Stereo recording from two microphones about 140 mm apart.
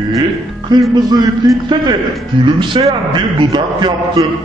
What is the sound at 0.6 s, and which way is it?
A man's voice, 30° right (ahead or behind).